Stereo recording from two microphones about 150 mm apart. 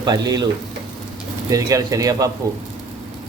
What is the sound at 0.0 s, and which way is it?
A man's voice, 25° right (ahead or behind).